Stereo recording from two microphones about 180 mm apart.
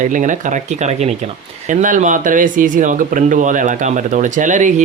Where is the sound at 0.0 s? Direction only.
45° right (ahead or behind).